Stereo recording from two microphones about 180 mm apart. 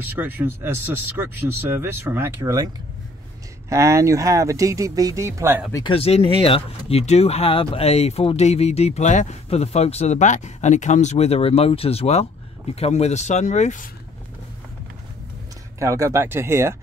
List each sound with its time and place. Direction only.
0.0 s speech: 10° right (ahead or behind)
5.7 s speech: 20° left (ahead or behind)
5.9 s speech: 35° left (ahead or behind)
15.8 s speech: 15° right (ahead or behind)